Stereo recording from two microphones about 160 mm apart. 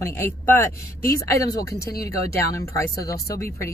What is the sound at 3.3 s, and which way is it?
Speech, 70° left (ahead or behind).